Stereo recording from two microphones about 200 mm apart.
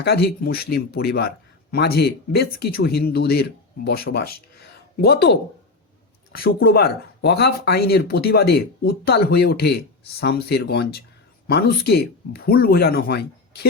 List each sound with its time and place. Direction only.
0.0 s speech: 50° left (ahead or behind)